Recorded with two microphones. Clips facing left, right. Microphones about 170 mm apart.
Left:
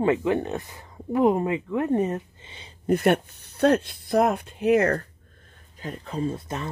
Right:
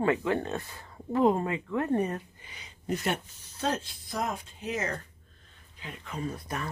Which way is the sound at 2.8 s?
60° left (ahead or behind).